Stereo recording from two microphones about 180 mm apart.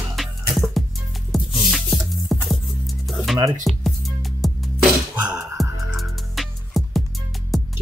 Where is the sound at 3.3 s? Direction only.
20° right (ahead or behind).